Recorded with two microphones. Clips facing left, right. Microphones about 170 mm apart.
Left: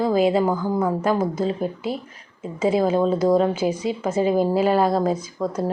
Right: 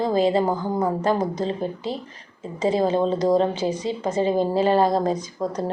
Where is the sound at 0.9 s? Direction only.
5° left (ahead or behind).